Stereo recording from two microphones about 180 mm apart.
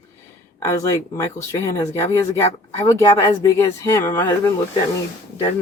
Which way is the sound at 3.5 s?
15° left (ahead or behind).